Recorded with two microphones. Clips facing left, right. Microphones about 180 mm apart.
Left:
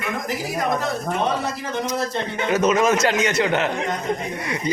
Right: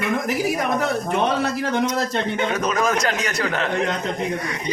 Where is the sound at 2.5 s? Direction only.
25° left (ahead or behind).